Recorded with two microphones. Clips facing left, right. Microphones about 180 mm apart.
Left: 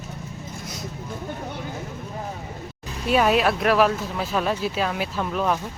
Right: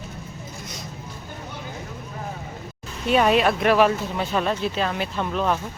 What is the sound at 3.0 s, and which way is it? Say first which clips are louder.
Speech: right 1 dB; 5° left (ahead or behind).